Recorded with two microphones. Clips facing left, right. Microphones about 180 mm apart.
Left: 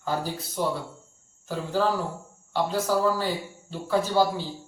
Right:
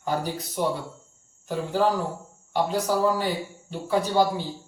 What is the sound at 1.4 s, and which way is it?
A man's voice, 15° right (ahead or behind).